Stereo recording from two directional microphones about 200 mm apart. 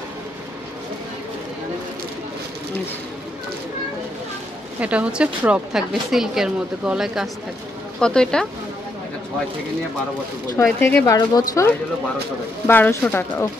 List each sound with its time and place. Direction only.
4.7 s a woman's voice: 5° right (ahead or behind)
10.5 s speech: 10° left (ahead or behind)